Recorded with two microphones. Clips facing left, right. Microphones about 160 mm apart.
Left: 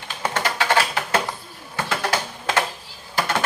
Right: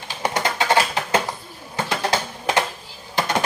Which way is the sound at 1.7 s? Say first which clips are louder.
Right 1 dB; 20° right (ahead or behind).